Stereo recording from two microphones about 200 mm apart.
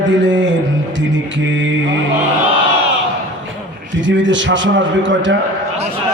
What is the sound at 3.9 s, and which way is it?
A man's voice, 65° right (ahead or behind).